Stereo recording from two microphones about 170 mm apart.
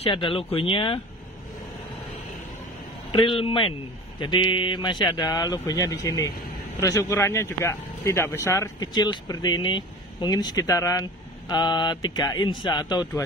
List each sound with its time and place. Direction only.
0.0 s speech: 30° left (ahead or behind)
3.1 s speech: 30° left (ahead or behind)